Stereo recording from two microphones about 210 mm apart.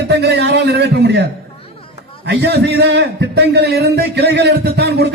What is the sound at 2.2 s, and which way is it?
A man's voice, 55° right (ahead or behind).